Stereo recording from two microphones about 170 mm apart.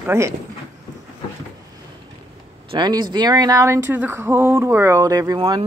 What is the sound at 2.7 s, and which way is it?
Speech, 25° right (ahead or behind).